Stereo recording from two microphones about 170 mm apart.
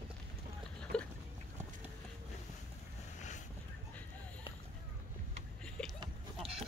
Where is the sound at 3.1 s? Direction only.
45° left (ahead or behind).